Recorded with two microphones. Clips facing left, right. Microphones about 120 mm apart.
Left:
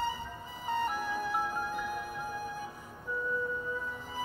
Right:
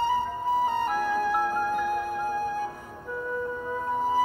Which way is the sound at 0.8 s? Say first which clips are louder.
Right 8 dB; 65° right (ahead or behind).